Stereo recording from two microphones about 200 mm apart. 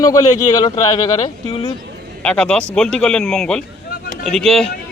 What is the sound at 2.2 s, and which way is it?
A man's voice, 5° left (ahead or behind).